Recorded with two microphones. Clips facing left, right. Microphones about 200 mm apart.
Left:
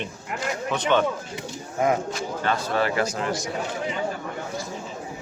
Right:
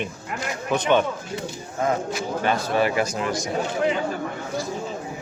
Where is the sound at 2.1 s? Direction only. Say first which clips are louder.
Right 3 dB; 15° right (ahead or behind).